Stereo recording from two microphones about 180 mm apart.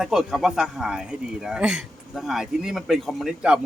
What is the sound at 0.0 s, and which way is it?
Speech, centre (ahead or behind).